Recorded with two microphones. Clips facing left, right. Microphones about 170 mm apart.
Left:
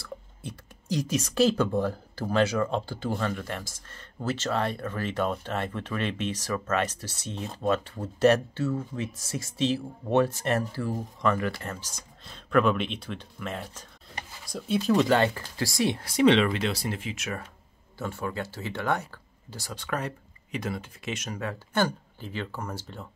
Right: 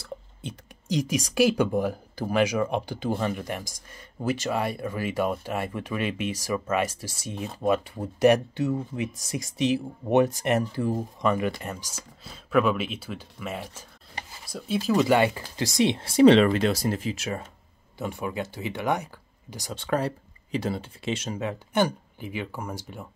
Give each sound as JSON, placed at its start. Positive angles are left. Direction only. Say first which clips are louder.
{"t": 0.4, "sound": "speech", "louder": "right 2 dB", "side_deg": -20}
{"t": 17.9, "sound": "speech", "louder": "right 2 dB", "side_deg": -15}